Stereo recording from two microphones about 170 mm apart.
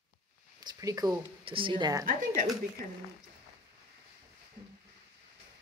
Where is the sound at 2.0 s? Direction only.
50° right (ahead or behind).